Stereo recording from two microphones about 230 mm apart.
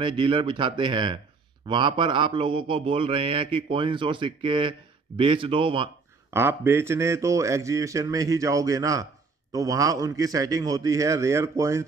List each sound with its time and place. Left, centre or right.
0.0 s a man's voice: right
6.3 s speech: centre